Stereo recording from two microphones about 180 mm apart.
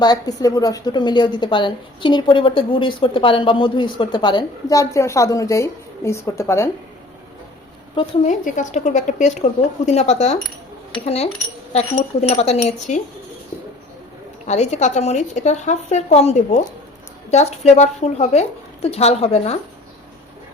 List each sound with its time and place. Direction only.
0.0 s a woman's voice: 20° left (ahead or behind)
7.9 s a woman's voice: 30° left (ahead or behind)
8.3 s a woman's voice: 45° left (ahead or behind)
14.4 s a woman's voice: 40° left (ahead or behind)